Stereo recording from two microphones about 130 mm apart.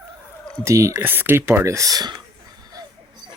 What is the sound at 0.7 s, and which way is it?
Speech, 25° right (ahead or behind).